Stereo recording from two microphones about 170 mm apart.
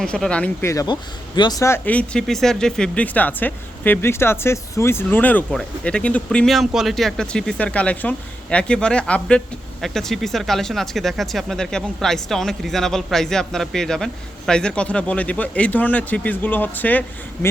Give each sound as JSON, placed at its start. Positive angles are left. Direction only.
{"t": 0.0, "sound": "speech", "side_deg": 5}
{"t": 0.7, "sound": "speech", "side_deg": 20}